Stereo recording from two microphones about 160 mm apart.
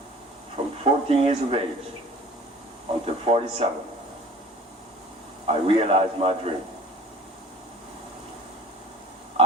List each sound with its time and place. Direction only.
0.5 s speech: 35° right (ahead or behind)
3.2 s speech: 35° right (ahead or behind)
5.5 s speech: 35° right (ahead or behind)